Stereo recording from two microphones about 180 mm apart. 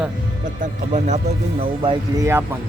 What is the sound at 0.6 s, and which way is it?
Speech, 40° right (ahead or behind).